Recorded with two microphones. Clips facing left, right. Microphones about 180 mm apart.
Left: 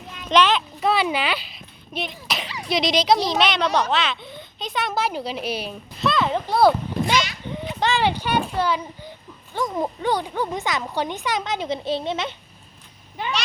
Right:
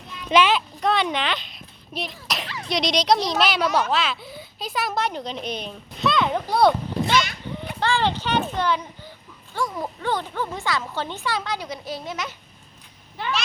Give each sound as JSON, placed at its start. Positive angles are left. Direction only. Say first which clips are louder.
{"t": 0.3, "sound": "a child's voice", "louder": "even", "side_deg": -10}
{"t": 0.8, "sound": "a sound", "louder": "left 1 dB", "side_deg": 5}
{"t": 2.5, "sound": "speech", "louder": "left 2 dB", "side_deg": 5}
{"t": 7.8, "sound": "speech", "louder": "left 1 dB", "side_deg": 15}
{"t": 9.6, "sound": "a child's voice", "louder": "left 3 dB", "side_deg": 20}
{"t": 13.2, "sound": "speech", "louder": "even", "side_deg": 15}